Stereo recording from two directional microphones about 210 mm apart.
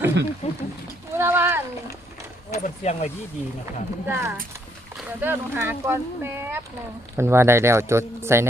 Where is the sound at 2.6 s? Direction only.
30° left (ahead or behind).